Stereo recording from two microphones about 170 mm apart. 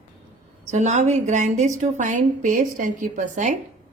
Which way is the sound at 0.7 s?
40° right (ahead or behind).